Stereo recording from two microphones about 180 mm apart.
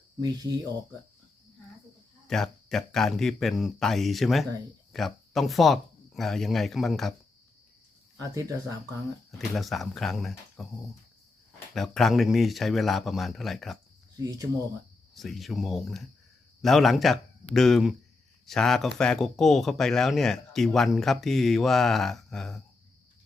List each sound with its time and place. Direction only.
0.2 s speech: 20° right (ahead or behind)
2.2 s speech: centre (ahead or behind)
8.2 s speech: 20° right (ahead or behind)
9.4 s speech: centre (ahead or behind)
11.7 s speech: centre (ahead or behind)
14.2 s speech: 20° right (ahead or behind)
15.1 s speech: centre (ahead or behind)